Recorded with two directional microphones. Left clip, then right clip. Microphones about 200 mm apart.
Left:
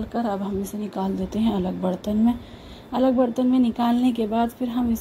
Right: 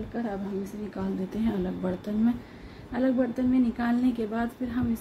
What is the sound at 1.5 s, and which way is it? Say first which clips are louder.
A woman's voice: left 5 dB; 15° left (ahead or behind).